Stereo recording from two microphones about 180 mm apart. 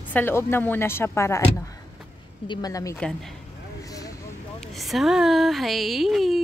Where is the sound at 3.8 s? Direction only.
20° left (ahead or behind).